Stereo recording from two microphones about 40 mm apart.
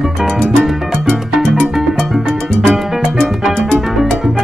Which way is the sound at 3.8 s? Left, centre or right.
Centre.